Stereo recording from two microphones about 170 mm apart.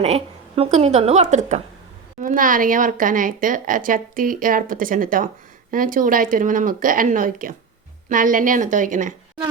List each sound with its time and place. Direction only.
0.0 s a woman's voice: 35° right (ahead or behind)